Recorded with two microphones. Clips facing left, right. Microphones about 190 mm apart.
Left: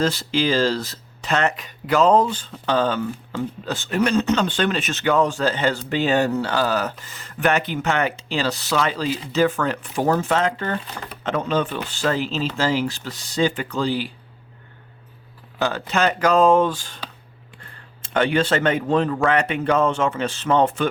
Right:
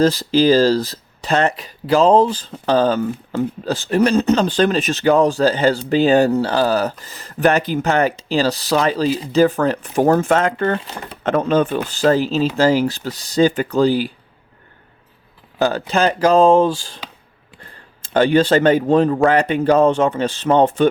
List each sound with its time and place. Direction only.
0.0 s speech: 35° right (ahead or behind)
15.5 s speech: 35° right (ahead or behind)
18.1 s speech: 35° right (ahead or behind)